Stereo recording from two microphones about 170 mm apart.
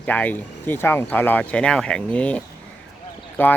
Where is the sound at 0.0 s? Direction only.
10° left (ahead or behind).